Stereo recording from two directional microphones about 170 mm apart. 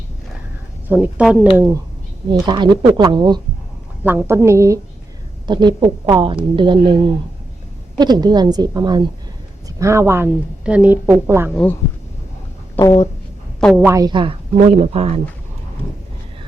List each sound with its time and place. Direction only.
0.9 s a woman's voice: 10° right (ahead or behind)
1.5 s a woman's voice: 15° right (ahead or behind)
2.3 s a woman's voice: 25° right (ahead or behind)
4.0 s a woman's voice: 10° right (ahead or behind)
11.5 s speech: 10° left (ahead or behind)
13.7 s a woman's voice: 10° right (ahead or behind)
14.0 s a woman's voice: 30° right (ahead or behind)
14.7 s speech: 40° right (ahead or behind)